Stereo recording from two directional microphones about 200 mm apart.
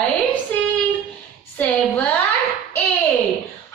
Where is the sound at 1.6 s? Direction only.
10° left (ahead or behind).